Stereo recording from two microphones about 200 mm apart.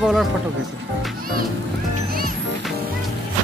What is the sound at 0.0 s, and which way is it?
Speech, centre (ahead or behind).